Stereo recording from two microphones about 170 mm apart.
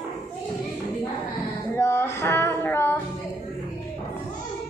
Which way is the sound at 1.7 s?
15° left (ahead or behind).